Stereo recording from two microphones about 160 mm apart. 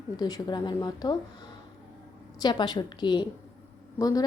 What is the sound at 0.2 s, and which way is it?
A woman's voice, 25° left (ahead or behind).